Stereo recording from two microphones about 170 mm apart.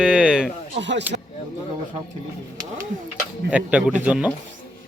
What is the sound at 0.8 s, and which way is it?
Speech, 90° right.